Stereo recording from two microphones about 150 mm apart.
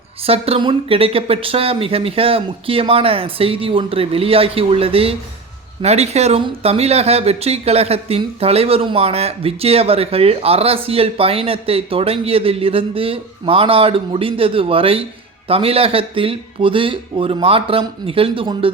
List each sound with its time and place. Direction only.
0.3 s speech: 40° right (ahead or behind)